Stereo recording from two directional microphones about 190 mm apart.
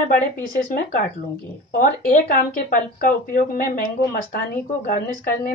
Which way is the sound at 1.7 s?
45° left (ahead or behind).